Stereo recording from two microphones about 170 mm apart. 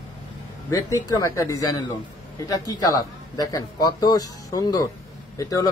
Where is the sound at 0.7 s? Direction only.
20° left (ahead or behind).